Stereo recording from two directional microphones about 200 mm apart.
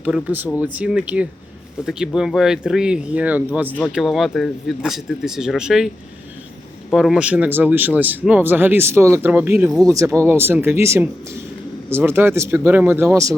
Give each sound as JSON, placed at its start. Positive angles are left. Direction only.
{"t": 0.0, "sound": "speech", "side_deg": -5}
{"t": 6.9, "sound": "speech", "side_deg": 0}
{"t": 9.8, "sound": "speech", "side_deg": -15}